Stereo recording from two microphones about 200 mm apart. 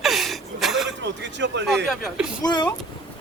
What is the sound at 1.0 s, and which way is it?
Speech, 60° right (ahead or behind).